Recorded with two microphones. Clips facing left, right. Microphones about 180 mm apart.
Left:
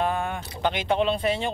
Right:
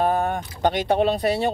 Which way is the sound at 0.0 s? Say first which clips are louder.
Right 5 dB; 40° right (ahead or behind).